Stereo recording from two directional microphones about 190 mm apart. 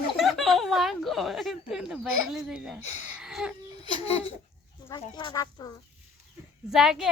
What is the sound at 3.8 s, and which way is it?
Babbling, 30° left (ahead or behind).